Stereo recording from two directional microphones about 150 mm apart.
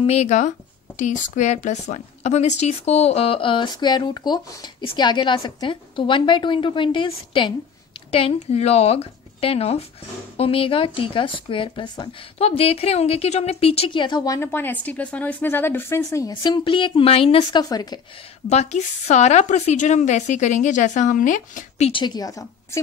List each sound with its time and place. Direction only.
0.0 s a woman's voice: 45° left (ahead or behind); by 14.5 s 25° left (ahead or behind)
14.5 s speech: 10° left (ahead or behind)
18.5 s a woman's voice: 45° left (ahead or behind)
21.9 s speech: 30° left (ahead or behind)